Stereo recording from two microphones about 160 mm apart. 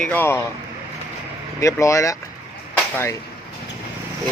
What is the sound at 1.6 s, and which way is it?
Speech, 20° left (ahead or behind).